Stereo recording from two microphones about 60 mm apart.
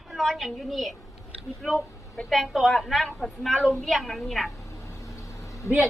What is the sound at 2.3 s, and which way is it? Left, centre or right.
A woman's voice, centre.